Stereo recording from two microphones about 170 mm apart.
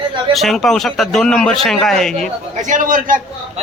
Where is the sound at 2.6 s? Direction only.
50° right (ahead or behind).